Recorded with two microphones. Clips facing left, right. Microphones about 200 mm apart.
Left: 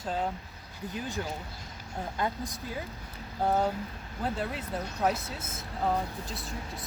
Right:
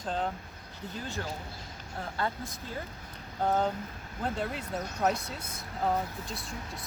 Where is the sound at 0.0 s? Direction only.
5° left (ahead or behind).